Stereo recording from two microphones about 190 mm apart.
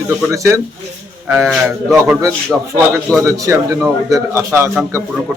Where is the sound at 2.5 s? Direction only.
5° right (ahead or behind).